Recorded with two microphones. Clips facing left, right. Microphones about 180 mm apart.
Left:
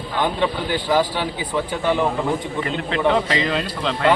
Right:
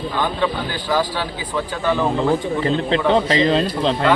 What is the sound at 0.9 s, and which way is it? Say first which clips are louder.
A man's voice: left 1 dB; 20° left (ahead or behind).